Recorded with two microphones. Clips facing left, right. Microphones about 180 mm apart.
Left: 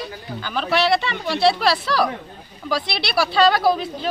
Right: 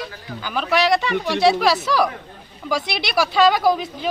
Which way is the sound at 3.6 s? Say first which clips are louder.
Even; 15° right (ahead or behind).